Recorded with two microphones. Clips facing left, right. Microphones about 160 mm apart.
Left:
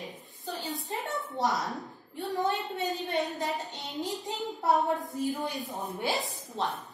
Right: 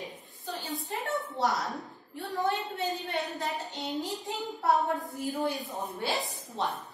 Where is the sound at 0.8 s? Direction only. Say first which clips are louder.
Right 1 dB; 20° left (ahead or behind).